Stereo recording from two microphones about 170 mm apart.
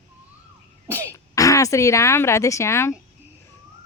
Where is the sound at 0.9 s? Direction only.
15° right (ahead or behind).